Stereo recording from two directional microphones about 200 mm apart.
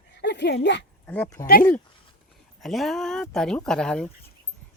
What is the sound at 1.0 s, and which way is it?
Speech, 10° left (ahead or behind).